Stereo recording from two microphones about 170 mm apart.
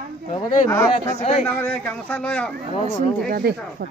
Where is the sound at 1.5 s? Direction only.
10° left (ahead or behind).